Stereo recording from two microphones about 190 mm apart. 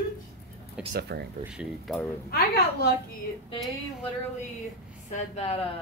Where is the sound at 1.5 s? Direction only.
Centre (ahead or behind).